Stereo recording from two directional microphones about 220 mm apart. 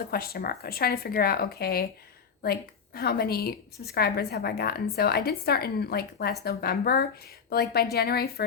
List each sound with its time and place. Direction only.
0.1 s a woman's voice: 45° left (ahead or behind)